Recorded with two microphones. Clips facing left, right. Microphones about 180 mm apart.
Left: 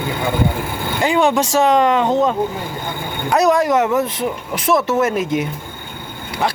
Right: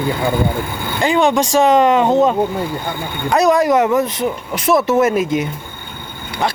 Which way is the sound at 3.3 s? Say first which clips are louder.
Right 2 dB; 5° left (ahead or behind).